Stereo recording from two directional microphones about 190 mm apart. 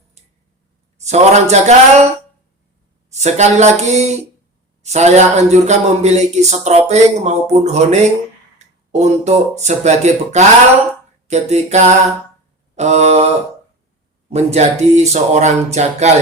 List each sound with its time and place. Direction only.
0.9 s a man's voice: 35° right (ahead or behind)
3.1 s speech: 35° right (ahead or behind)